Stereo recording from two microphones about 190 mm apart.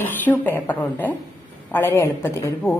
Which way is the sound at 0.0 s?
10° left (ahead or behind).